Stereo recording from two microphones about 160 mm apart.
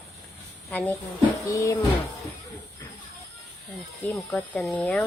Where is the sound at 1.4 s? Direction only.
20° left (ahead or behind).